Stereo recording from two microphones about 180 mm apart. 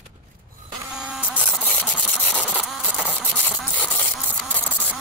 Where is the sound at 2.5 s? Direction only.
Centre (ahead or behind).